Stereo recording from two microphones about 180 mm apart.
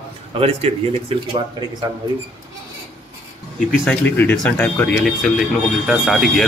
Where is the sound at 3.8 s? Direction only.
10° left (ahead or behind).